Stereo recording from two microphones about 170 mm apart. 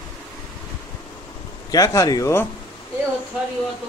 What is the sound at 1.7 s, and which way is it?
Speech, 20° left (ahead or behind).